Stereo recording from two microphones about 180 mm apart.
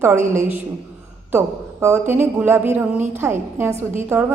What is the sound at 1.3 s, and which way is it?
A woman's voice, 15° right (ahead or behind).